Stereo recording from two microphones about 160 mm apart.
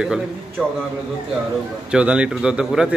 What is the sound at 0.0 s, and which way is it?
Speech, 5° right (ahead or behind).